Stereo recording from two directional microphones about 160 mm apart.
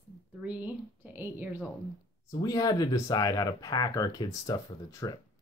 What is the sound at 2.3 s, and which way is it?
Speech, 25° left (ahead or behind).